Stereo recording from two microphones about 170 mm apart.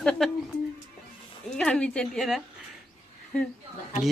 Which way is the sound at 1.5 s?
5° left (ahead or behind).